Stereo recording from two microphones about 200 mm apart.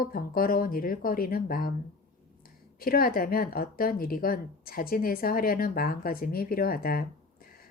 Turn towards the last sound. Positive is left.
turn(degrees=45)  # may be behind; listen again after turning